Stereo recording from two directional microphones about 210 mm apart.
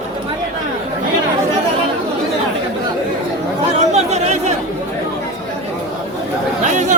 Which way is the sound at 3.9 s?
30° right (ahead or behind).